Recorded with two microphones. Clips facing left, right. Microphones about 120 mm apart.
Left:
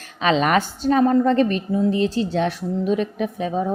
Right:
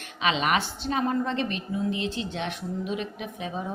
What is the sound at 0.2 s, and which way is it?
A woman's voice, 40° left (ahead or behind).